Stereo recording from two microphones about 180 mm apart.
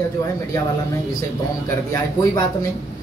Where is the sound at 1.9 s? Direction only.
20° left (ahead or behind).